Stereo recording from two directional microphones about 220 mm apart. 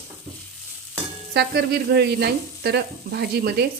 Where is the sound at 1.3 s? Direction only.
45° right (ahead or behind).